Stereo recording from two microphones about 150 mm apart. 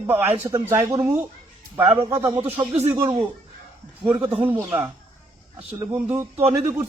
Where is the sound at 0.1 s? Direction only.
15° right (ahead or behind).